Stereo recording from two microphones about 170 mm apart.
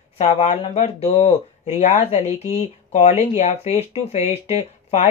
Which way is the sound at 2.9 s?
40° left (ahead or behind).